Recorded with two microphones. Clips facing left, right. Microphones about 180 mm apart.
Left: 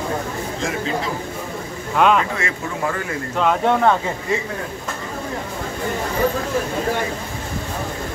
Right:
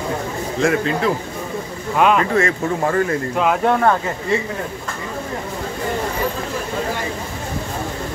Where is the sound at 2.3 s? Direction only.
45° right (ahead or behind).